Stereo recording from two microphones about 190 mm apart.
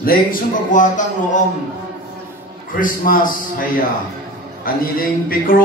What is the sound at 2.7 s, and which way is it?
Speech, 45° left (ahead or behind).